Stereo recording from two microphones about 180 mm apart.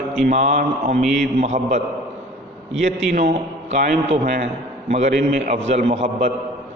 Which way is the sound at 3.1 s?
45° right (ahead or behind).